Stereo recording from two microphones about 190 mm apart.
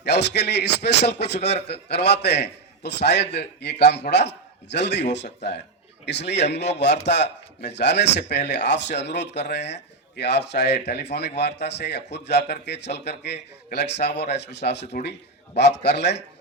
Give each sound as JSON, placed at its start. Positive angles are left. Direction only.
{"t": 0.0, "sound": "speech", "side_deg": 60}